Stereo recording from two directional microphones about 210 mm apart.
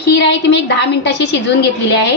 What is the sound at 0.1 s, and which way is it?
A woman's voice, 55° left (ahead or behind).